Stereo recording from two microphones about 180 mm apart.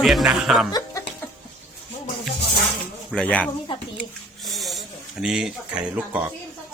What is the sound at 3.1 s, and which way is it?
Speech, 5° left (ahead or behind).